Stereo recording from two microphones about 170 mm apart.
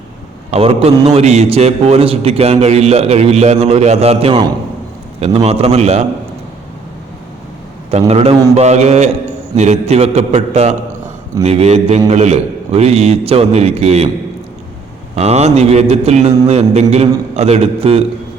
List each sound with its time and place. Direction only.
0.5 s a man's voice: 35° right (ahead or behind)
7.9 s a man's voice: 35° right (ahead or behind)
15.1 s a man's voice: 40° right (ahead or behind)